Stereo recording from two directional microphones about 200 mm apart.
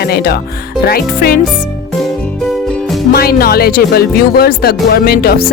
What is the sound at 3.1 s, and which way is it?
Speech, 50° left (ahead or behind).